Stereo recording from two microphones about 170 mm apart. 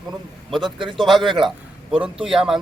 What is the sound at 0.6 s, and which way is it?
Speech, 30° right (ahead or behind).